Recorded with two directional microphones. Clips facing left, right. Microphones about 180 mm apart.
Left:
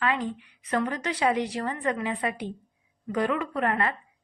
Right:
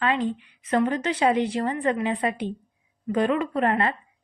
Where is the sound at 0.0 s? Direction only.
25° right (ahead or behind).